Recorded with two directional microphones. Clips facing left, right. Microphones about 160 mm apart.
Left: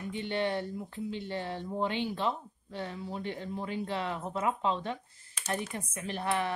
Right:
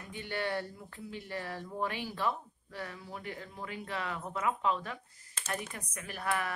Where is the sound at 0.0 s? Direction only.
25° left (ahead or behind).